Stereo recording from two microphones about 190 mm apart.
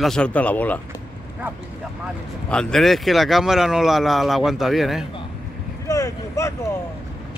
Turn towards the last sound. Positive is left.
turn(degrees=15)  # may be behind; listen again after turning